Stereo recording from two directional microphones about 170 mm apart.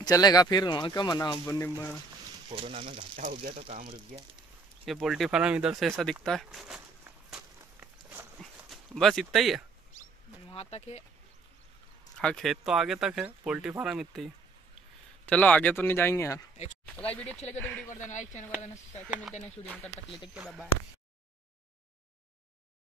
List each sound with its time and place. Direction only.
0.0 s speech: 20° left (ahead or behind)
2.5 s speech: 35° right (ahead or behind)
3.5 s speech: 35° right (ahead or behind)
4.8 s speech: centre (ahead or behind)
7.2 s walk: 5° right (ahead or behind)
8.4 s a sound: centre (ahead or behind)
10.5 s speech: 35° left (ahead or behind)
12.2 s speech: 5° left (ahead or behind)
17.8 s speech: 45° left (ahead or behind)
20.3 s speech: centre (ahead or behind)